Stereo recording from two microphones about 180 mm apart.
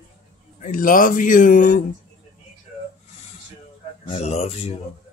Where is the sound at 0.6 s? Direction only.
50° left (ahead or behind).